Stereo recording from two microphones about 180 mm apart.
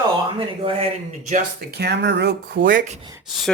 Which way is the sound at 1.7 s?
65° right (ahead or behind).